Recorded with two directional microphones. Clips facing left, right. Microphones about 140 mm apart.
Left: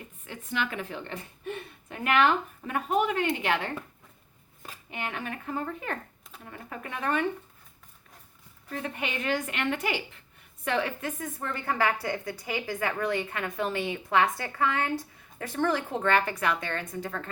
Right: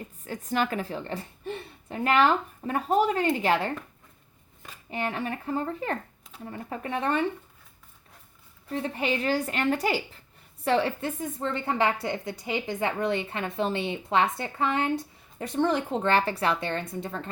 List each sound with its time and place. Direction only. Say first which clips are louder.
0.3 s a woman's voice: right 5 dB; 40° right (ahead or behind)
4.9 s a woman's voice: right 5 dB; 35° right (ahead or behind)
8.7 s a woman's voice: right 5 dB; 35° right (ahead or behind)